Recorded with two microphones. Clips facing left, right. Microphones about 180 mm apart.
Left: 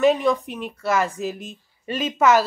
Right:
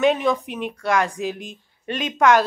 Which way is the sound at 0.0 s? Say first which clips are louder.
Left 1 dB; centre (ahead or behind).